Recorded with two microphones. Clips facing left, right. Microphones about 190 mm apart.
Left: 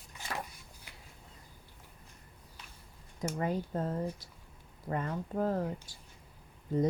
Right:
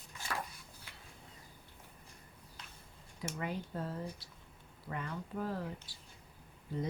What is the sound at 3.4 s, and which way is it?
Speech, 40° left (ahead or behind).